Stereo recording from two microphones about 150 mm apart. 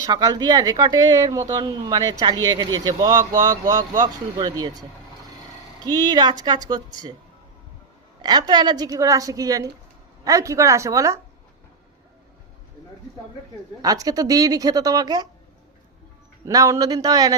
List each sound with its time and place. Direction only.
0.1 s speech: 25° right (ahead or behind)
5.8 s speech: 25° right (ahead or behind)
8.2 s speech: 30° right (ahead or behind)
13.8 s speech: 25° right (ahead or behind)
16.5 s speech: 20° right (ahead or behind)